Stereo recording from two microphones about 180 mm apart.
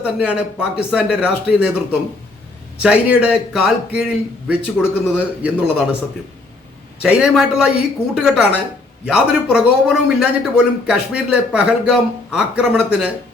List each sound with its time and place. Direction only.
0.0 s speech: 5° right (ahead or behind)
7.0 s speech: 5° right (ahead or behind)